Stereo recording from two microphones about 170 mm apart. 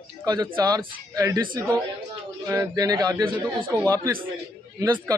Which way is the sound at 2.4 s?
20° right (ahead or behind).